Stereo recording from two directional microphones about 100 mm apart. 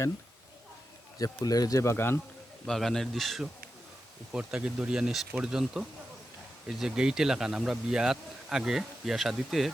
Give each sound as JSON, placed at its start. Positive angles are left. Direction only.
{"t": 1.2, "sound": "speech", "side_deg": 40}
{"t": 2.6, "sound": "speech", "side_deg": 5}